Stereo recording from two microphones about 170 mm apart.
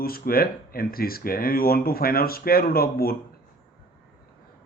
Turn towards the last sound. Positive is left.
turn(degrees=60)  # may be behind; listen again after turning